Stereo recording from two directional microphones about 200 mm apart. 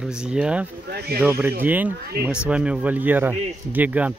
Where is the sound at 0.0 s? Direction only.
5° right (ahead or behind).